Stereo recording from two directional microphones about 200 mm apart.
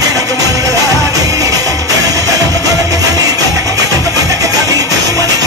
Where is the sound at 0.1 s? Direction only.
15° right (ahead or behind).